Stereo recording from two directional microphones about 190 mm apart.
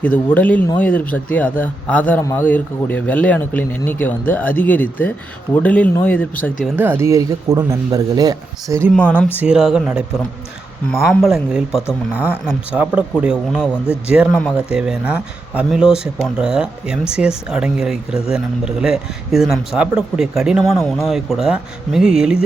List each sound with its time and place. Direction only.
0.0 s speech: 10° left (ahead or behind)
6.7 s speech: 10° right (ahead or behind)
9.0 s speech: 5° right (ahead or behind)